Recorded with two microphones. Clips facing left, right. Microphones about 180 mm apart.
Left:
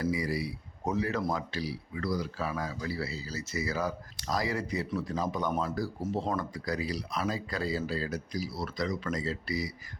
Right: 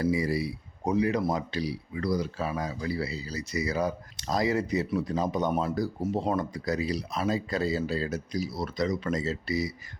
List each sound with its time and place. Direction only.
0.0 s speech: 25° right (ahead or behind)
0.9 s speech: 15° right (ahead or behind)